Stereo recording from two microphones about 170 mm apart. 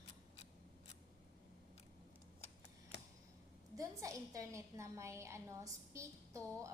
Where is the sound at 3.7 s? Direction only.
20° right (ahead or behind).